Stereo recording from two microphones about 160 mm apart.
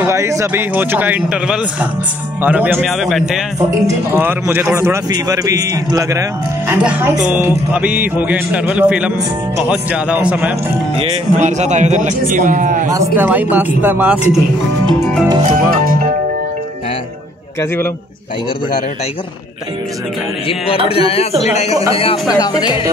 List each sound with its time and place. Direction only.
0.0 s a man's voice: 20° right (ahead or behind); by 3.4 s centre (ahead or behind)
4.1 s a man's voice: 15° right (ahead or behind)
11.3 s a man's voice: 45° right (ahead or behind)
12.9 s a man's voice: 15° right (ahead or behind)
15.4 s speech: 60° right (ahead or behind)
20.4 s a man's voice: 35° left (ahead or behind)
22.3 s speech: 25° left (ahead or behind)